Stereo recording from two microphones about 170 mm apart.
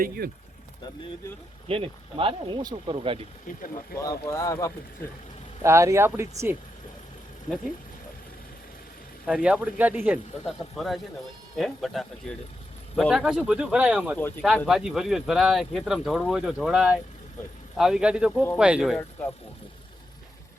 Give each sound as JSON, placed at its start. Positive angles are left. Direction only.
{"t": 1.6, "sound": "speech", "side_deg": -35}
{"t": 3.9, "sound": "speech", "side_deg": 20}
{"t": 5.6, "sound": "speech", "side_deg": -15}
{"t": 9.2, "sound": "speech", "side_deg": -5}